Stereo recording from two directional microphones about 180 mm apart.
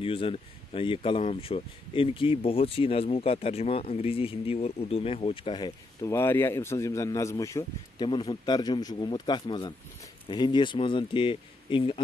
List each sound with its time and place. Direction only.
0.0 s speech: 30° left (ahead or behind)
6.0 s a man's voice: 15° left (ahead or behind)